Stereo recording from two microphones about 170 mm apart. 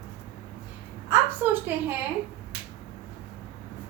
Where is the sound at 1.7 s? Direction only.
10° right (ahead or behind).